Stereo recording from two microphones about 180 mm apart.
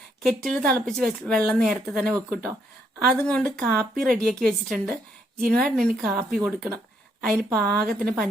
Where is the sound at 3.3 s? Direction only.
5° left (ahead or behind).